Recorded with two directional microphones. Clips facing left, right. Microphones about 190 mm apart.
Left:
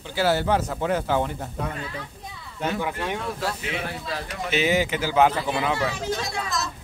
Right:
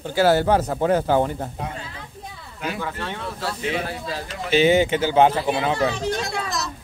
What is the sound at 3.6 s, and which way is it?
Speech, 30° right (ahead or behind).